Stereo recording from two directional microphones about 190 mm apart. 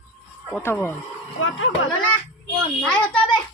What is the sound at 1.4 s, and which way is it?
Speech, 90° left.